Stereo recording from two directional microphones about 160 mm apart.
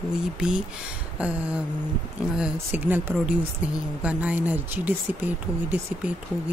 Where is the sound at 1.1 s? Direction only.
5° right (ahead or behind).